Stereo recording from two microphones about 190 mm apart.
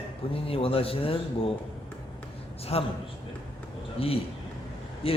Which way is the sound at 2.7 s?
30° left (ahead or behind).